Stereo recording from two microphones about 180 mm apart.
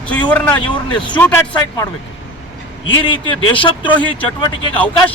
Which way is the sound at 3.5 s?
30° left (ahead or behind).